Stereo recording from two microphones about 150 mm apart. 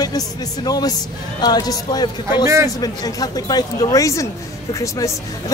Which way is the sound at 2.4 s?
20° right (ahead or behind).